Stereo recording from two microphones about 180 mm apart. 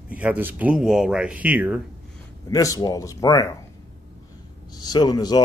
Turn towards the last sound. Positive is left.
turn(degrees=20)  # may be behind; listen again after turning